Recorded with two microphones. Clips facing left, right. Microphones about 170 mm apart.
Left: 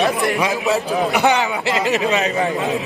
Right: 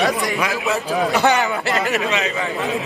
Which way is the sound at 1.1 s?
15° left (ahead or behind).